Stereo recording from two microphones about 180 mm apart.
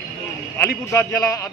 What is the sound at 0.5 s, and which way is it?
Speech, 15° left (ahead or behind).